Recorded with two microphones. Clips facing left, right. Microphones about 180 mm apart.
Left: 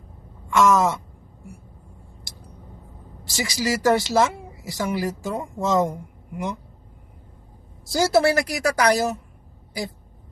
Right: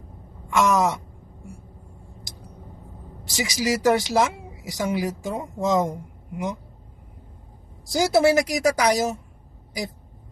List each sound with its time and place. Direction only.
0.5 s a sound: 20° right (ahead or behind)
3.2 s speech: 20° right (ahead or behind)
7.9 s speech: 15° right (ahead or behind)